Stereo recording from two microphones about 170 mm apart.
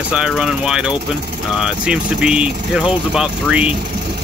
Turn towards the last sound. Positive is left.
turn(degrees=-5)  # may be behind; listen again after turning